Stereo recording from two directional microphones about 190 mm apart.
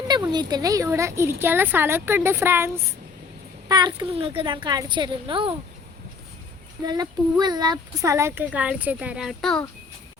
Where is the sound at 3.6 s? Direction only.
20° right (ahead or behind).